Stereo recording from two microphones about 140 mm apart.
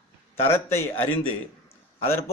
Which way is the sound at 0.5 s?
15° left (ahead or behind).